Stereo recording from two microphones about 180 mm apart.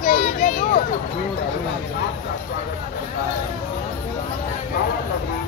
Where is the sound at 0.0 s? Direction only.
50° left (ahead or behind).